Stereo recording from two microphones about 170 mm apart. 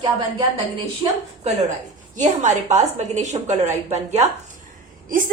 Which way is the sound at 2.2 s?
45° right (ahead or behind).